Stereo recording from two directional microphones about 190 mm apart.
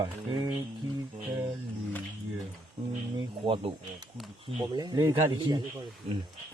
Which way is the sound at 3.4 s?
30° right (ahead or behind).